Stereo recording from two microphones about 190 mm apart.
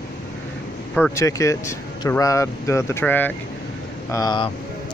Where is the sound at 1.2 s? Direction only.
15° left (ahead or behind).